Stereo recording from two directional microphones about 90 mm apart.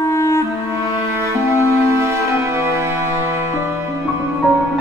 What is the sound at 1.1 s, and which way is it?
Music, 30° right (ahead or behind).